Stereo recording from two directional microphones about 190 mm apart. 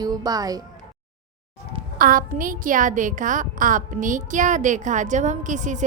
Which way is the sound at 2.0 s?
45° right (ahead or behind).